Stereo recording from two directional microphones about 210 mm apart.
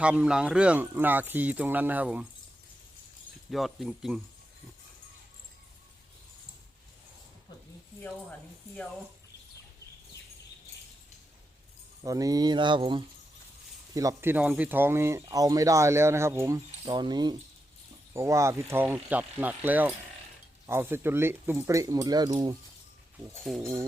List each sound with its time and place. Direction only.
0.0 s speech: 5° right (ahead or behind)
3.5 s speech: centre (ahead or behind)
12.0 s mantra: 15° right (ahead or behind)
13.9 s speech: 15° right (ahead or behind)
23.6 s speech: 10° right (ahead or behind)